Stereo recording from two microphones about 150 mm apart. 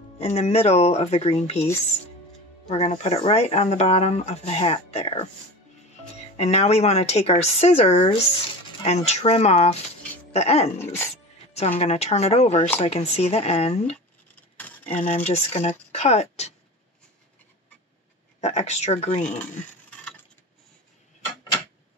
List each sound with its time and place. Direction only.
0.2 s speech: 45° left (ahead or behind)
2.7 s speech: 45° left (ahead or behind)
6.3 s speech: 45° left (ahead or behind)
11.8 s speech: 45° left (ahead or behind)
18.4 s speech: 45° left (ahead or behind)